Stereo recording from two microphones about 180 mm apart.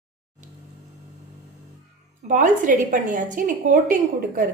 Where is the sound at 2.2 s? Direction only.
45° right (ahead or behind).